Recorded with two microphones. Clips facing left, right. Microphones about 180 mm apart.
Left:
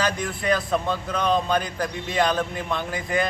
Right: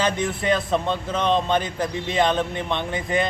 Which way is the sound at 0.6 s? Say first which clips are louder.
Right 2 dB; centre (ahead or behind).